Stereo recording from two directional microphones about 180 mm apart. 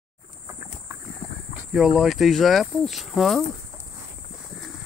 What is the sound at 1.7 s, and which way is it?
Speech, centre (ahead or behind).